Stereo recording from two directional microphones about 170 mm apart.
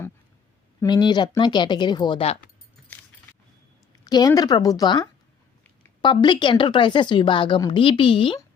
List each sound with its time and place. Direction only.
0.8 s speech: 25° left (ahead or behind)
4.0 s speech: 25° left (ahead or behind)